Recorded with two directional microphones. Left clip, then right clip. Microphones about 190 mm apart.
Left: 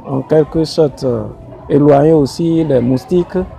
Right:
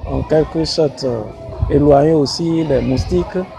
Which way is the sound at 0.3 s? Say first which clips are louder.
Left 3 dB; 55° left (ahead or behind).